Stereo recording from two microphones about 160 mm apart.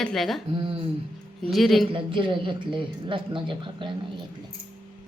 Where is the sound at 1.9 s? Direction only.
30° right (ahead or behind).